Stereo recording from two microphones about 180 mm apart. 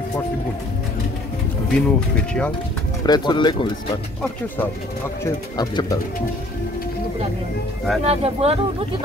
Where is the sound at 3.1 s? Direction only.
25° left (ahead or behind).